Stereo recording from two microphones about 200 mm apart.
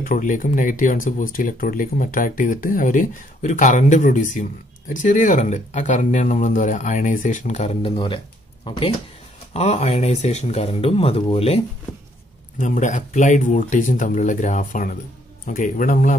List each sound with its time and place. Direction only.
0.0 s speech: 40° left (ahead or behind)